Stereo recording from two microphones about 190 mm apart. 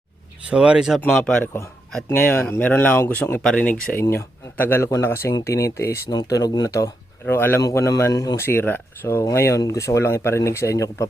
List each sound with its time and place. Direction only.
0.4 s speech: 5° right (ahead or behind); by 11.0 s 15° left (ahead or behind)